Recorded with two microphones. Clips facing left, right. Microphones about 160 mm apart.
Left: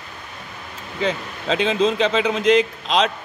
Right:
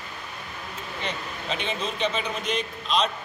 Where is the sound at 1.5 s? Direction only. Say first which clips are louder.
Left 12 dB; 90° left.